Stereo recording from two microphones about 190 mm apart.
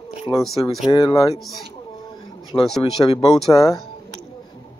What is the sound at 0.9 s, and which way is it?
Speech, 25° left (ahead or behind).